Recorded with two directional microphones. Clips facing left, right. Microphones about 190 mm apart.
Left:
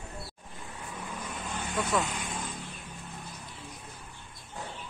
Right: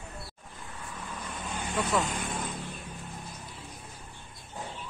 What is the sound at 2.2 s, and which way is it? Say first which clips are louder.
Vehicle: right 3 dB; 55° right (ahead or behind).